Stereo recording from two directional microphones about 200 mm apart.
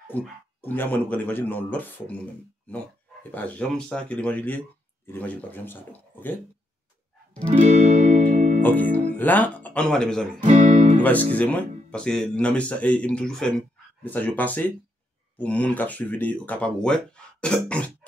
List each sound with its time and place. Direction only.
0.1 s speech: 10° left (ahead or behind)
3.3 s speech: 10° left (ahead or behind)
7.6 s music: 35° right (ahead or behind)
8.6 s speech: 10° left (ahead or behind)
10.4 s speech: 35° right (ahead or behind)
11.3 s speech: 5° left (ahead or behind)